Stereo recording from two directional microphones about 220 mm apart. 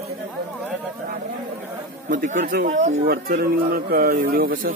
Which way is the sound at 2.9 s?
50° right (ahead or behind).